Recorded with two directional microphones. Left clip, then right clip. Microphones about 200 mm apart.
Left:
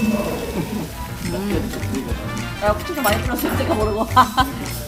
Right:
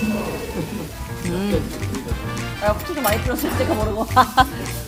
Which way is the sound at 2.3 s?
Centre (ahead or behind).